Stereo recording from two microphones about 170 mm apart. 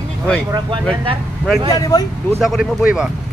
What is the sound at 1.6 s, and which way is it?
Speech, 20° left (ahead or behind).